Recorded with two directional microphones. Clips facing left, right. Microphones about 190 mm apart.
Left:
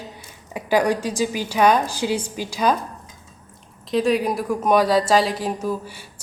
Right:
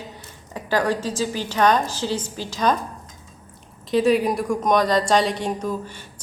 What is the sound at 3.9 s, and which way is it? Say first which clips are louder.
A woman's voice: right 1 dB; centre (ahead or behind).